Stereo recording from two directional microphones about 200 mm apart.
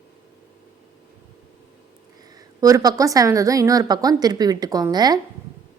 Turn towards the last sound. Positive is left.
turn(degrees=-20)  # may be behind; listen again after turning